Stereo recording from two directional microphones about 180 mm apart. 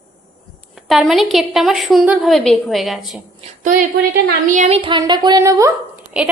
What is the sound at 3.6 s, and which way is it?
A woman's voice, 50° right (ahead or behind).